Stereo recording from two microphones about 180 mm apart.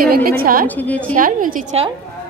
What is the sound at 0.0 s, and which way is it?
Speech, 55° right (ahead or behind).